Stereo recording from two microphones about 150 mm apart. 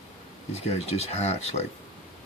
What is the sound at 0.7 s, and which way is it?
Speech, 45° left (ahead or behind).